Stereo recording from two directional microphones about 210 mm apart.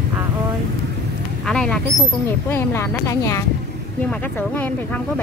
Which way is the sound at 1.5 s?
5° left (ahead or behind).